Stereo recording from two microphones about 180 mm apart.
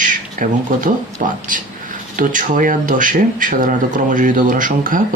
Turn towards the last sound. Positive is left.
turn(degrees=-50)  # may be behind; listen again after turning